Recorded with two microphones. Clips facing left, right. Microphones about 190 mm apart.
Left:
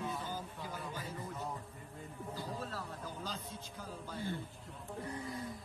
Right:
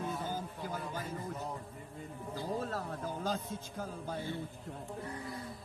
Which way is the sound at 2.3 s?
50° right (ahead or behind).